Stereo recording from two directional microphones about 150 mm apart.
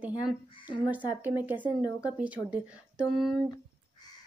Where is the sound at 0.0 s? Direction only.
10° right (ahead or behind).